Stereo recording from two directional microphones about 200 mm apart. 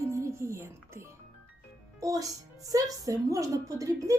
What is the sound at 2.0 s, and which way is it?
A woman's voice, 15° right (ahead or behind).